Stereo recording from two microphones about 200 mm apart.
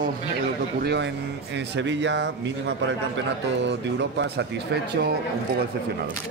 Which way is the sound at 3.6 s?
60° right (ahead or behind).